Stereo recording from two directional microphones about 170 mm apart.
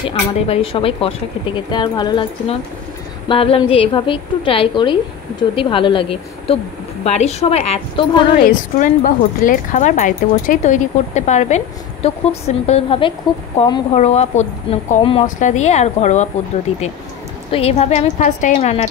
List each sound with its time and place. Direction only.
0.0 s a woman's voice: 35° left (ahead or behind)
8.5 s a woman's voice: 55° left (ahead or behind); by 15.2 s 35° left (ahead or behind)
15.2 s speech: 45° left (ahead or behind)
17.5 s a woman's voice: 35° left (ahead or behind)